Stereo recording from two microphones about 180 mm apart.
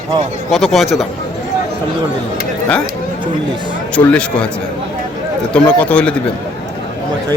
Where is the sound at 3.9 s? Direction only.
5° left (ahead or behind).